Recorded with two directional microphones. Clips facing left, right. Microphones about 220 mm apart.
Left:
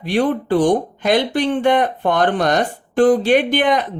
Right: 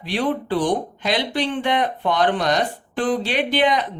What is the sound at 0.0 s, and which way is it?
Speech, 50° left (ahead or behind).